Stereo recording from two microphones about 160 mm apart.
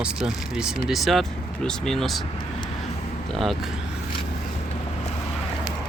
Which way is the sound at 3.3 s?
Centre (ahead or behind).